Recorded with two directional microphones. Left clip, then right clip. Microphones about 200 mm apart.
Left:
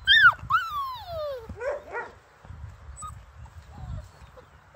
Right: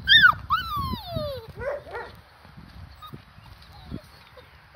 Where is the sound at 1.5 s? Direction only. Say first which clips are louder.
Left 1 dB; 30° right (ahead or behind).